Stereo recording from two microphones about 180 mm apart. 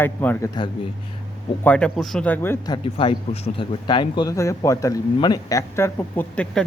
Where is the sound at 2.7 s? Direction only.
30° left (ahead or behind).